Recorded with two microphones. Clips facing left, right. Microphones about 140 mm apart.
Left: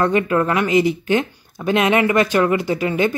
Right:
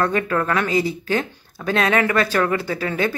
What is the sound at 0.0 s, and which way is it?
Speech, 20° left (ahead or behind).